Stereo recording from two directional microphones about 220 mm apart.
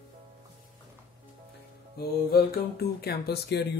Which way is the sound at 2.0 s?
45° left (ahead or behind).